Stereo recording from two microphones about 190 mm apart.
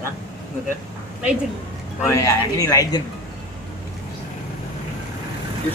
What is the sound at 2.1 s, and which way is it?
Speech, 15° left (ahead or behind).